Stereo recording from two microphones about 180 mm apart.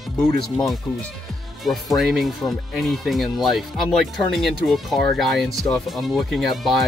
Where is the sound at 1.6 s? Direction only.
Centre (ahead or behind).